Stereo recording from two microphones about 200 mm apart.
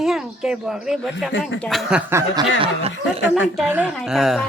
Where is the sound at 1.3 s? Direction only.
65° left (ahead or behind).